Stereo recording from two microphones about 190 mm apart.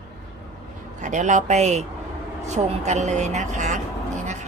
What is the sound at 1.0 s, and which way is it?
Speech, 40° right (ahead or behind).